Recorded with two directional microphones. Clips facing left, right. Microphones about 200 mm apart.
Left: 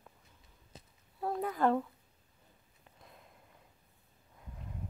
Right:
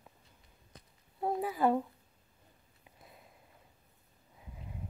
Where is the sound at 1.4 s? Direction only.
10° right (ahead or behind).